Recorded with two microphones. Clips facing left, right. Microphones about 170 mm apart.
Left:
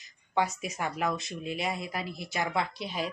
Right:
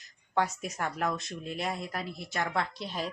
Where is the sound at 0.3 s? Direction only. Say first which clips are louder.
Left 1 dB; centre (ahead or behind).